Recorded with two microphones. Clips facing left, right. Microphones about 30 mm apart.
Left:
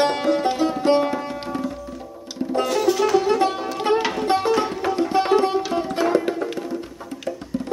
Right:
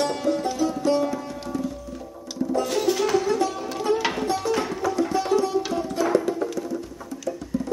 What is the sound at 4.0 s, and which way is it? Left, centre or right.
Music, centre.